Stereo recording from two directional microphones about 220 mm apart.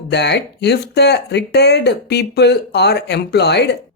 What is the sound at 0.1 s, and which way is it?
Speech, 50° left (ahead or behind).